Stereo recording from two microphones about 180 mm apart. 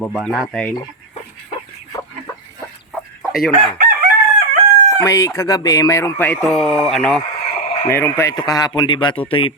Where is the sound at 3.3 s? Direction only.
Centre (ahead or behind).